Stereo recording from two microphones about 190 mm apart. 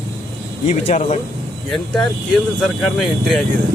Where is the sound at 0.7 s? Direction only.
40° left (ahead or behind).